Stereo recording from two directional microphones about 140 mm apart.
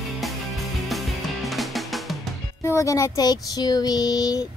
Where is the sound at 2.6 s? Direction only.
20° left (ahead or behind).